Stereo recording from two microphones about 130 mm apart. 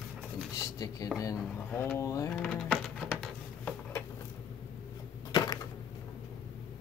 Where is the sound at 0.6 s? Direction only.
25° left (ahead or behind).